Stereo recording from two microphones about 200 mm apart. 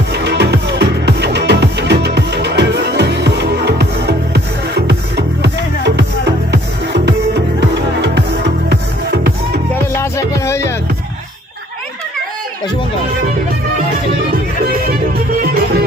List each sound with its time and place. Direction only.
0.1 s music: 55° right (ahead or behind)
9.9 s music: 15° left (ahead or behind)
14.9 s music: 50° right (ahead or behind)